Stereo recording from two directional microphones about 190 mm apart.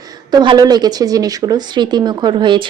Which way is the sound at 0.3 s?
20° right (ahead or behind).